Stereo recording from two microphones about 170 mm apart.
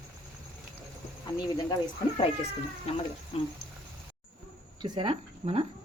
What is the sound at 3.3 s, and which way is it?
Speech, 35° left (ahead or behind).